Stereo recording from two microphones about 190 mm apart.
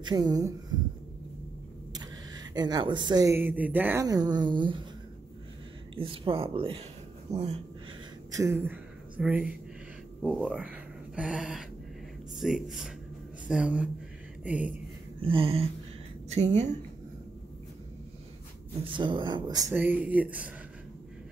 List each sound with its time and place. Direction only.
0.0 s speech: 20° right (ahead or behind)
2.0 s speech: 20° right (ahead or behind)
5.9 s speech: 30° right (ahead or behind)
8.3 s speech: 15° right (ahead or behind)
15.2 s a woman's voice: 30° right (ahead or behind)
18.9 s speech: 25° right (ahead or behind)
19.7 s speech: 10° right (ahead or behind)